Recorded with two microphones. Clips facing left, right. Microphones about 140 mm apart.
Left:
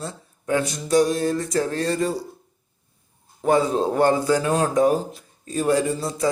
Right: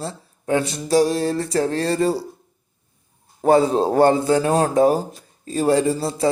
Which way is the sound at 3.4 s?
35° right (ahead or behind).